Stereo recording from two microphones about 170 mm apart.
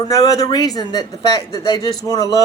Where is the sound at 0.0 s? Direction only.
20° left (ahead or behind).